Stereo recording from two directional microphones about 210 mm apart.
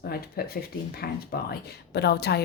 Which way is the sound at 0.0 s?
45° left (ahead or behind).